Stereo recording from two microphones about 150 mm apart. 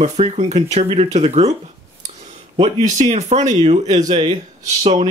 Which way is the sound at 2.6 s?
50° right (ahead or behind).